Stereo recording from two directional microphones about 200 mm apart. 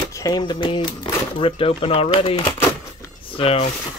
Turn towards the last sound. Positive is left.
turn(degrees=30)  # may be behind; listen again after turning